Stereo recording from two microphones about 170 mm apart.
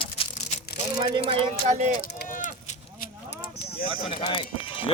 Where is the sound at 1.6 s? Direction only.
45° right (ahead or behind).